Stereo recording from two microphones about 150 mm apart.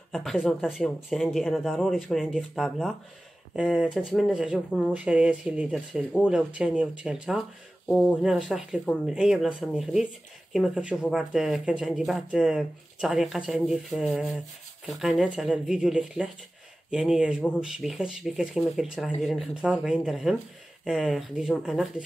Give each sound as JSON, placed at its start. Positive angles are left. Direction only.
{"t": 0.1, "sound": "speech", "side_deg": 0}